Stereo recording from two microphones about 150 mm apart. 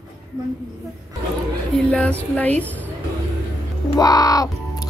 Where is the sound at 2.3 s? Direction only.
10° left (ahead or behind).